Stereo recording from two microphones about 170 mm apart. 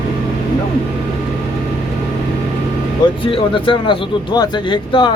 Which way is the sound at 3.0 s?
30° left (ahead or behind).